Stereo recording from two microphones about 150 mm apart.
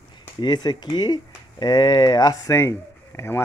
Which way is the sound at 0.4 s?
30° left (ahead or behind).